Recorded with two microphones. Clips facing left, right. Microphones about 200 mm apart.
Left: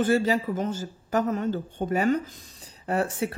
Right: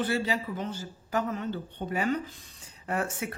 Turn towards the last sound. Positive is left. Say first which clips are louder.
# left 5 dB
turn(degrees=30)  # may be behind; listen again after turning